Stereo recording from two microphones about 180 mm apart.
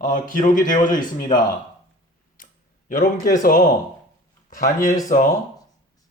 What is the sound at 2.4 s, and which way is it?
Clicking, 50° left (ahead or behind).